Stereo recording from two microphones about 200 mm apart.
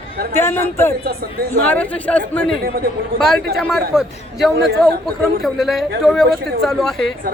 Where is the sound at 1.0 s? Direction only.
50° right (ahead or behind).